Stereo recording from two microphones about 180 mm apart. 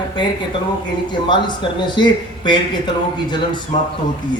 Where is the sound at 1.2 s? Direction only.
25° left (ahead or behind).